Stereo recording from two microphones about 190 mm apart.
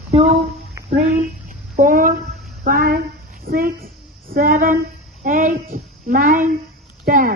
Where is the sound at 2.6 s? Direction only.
50° right (ahead or behind).